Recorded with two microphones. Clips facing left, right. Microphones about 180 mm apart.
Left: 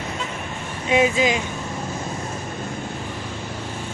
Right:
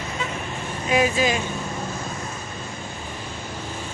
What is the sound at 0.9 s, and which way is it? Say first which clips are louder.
Speech: left 2 dB; 20° left (ahead or behind).